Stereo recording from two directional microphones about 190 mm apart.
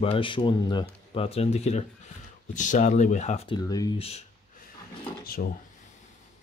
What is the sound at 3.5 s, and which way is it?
Speech, 20° left (ahead or behind).